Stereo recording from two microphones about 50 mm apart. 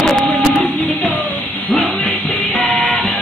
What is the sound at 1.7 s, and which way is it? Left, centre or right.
Music, left.